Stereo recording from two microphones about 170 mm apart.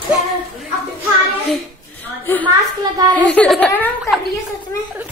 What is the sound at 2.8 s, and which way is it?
Speech, 25° right (ahead or behind).